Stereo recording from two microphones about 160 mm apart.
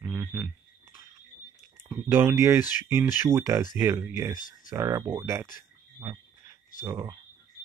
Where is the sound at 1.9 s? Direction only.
15° right (ahead or behind).